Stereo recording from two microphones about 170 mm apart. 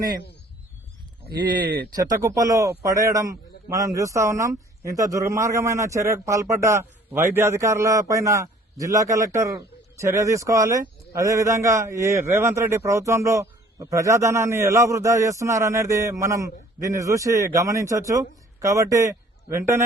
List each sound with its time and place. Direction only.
2.0 s a man's voice: 20° right (ahead or behind)